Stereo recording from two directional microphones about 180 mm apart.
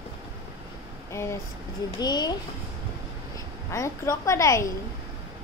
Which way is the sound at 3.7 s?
15° left (ahead or behind).